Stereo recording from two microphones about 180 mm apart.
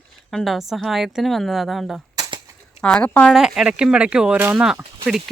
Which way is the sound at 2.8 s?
5° left (ahead or behind).